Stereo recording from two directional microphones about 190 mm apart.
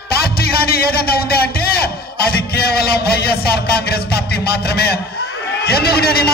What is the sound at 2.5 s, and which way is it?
A man's voice, 55° left (ahead or behind).